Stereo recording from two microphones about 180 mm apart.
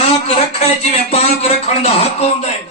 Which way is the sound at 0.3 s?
35° left (ahead or behind).